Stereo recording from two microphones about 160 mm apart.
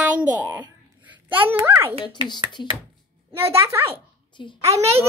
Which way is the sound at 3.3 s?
15° right (ahead or behind).